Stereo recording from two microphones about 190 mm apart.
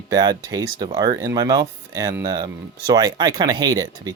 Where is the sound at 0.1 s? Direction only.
20° right (ahead or behind).